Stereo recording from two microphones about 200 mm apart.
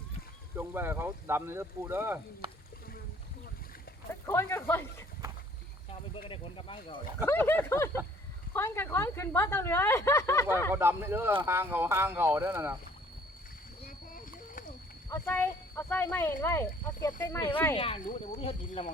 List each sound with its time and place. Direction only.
0.5 s speech: 10° right (ahead or behind)
4.3 s a woman's voice: 10° left (ahead or behind)
5.9 s speech: 25° left (ahead or behind)
7.3 s a woman's voice: 10° left (ahead or behind)
10.7 s speech: 10° right (ahead or behind)
15.1 s a woman's voice: 10° left (ahead or behind); by 18.9 s 30° left (ahead or behind)